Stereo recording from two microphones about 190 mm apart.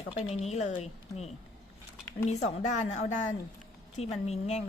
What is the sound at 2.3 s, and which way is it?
Speech, 40° left (ahead or behind).